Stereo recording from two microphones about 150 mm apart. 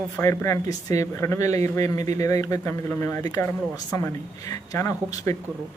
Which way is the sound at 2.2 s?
20° left (ahead or behind).